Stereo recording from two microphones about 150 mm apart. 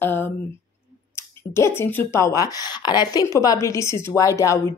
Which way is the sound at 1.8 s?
15° left (ahead or behind).